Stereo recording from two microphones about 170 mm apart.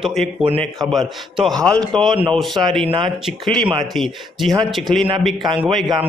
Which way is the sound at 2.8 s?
30° right (ahead or behind).